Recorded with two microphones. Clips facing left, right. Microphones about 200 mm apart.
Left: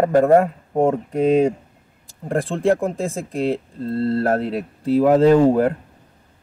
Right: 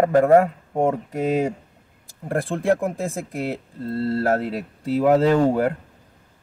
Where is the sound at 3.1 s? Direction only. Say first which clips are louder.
Left 5 dB; 10° right (ahead or behind).